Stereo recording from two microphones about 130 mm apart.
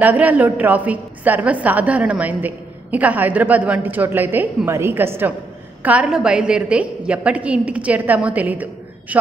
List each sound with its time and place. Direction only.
0.0 s a woman's voice: 15° right (ahead or behind)